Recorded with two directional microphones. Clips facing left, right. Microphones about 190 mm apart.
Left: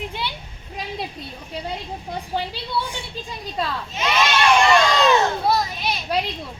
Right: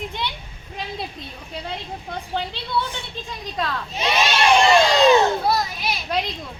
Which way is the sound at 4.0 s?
30° right (ahead or behind).